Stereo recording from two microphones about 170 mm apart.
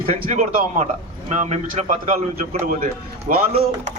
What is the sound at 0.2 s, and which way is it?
A man's voice, 45° right (ahead or behind).